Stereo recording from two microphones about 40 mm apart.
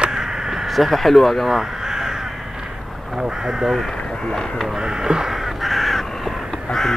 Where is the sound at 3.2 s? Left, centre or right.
Centre.